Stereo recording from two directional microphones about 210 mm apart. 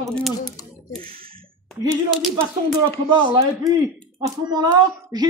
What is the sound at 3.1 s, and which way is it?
A man's voice, 20° right (ahead or behind).